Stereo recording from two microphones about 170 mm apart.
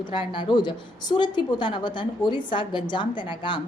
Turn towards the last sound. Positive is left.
turn(degrees=30)  # may be behind; listen again after turning